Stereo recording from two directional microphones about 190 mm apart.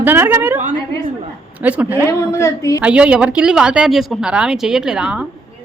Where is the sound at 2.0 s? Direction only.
15° left (ahead or behind).